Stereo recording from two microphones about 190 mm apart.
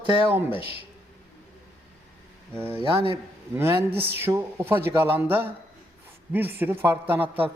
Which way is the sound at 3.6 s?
10° right (ahead or behind).